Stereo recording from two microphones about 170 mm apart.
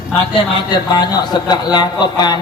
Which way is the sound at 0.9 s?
25° left (ahead or behind).